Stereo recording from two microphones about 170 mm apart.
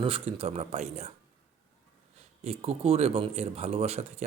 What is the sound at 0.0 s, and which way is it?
Speech, 35° right (ahead or behind).